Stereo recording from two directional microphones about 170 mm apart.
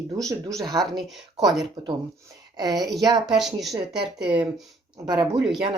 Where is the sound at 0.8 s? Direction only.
Centre (ahead or behind).